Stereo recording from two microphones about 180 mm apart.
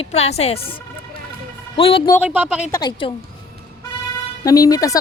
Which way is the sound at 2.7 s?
20° left (ahead or behind).